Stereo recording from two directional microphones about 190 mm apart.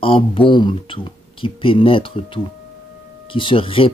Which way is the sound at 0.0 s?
30° left (ahead or behind).